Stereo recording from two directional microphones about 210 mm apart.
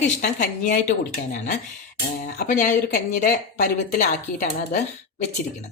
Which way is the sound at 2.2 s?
40° left (ahead or behind).